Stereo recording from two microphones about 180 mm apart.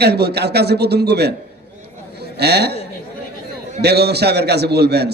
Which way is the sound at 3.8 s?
65° right (ahead or behind).